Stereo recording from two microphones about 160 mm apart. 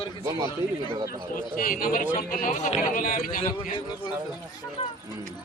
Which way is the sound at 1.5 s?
60° left (ahead or behind).